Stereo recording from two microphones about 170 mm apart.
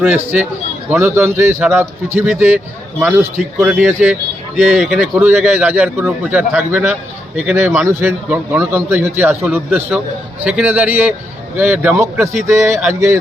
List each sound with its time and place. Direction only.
0.0 s a man's voice: 10° right (ahead or behind)
5.1 s a man's voice: 10° right (ahead or behind)